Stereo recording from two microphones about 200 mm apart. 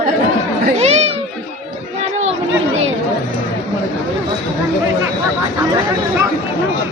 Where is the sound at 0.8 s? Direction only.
30° right (ahead or behind).